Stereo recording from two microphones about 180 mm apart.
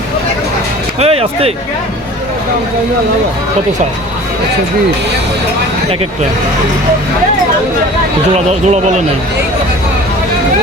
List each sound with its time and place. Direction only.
0.9 s speech: 35° right (ahead or behind)
8.4 s speech: 40° right (ahead or behind)